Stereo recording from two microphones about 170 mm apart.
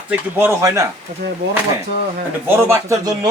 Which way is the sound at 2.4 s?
15° right (ahead or behind).